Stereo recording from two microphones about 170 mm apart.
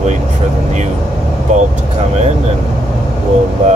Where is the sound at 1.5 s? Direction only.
45° right (ahead or behind).